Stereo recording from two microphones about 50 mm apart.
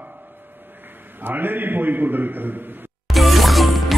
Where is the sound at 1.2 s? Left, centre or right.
Right.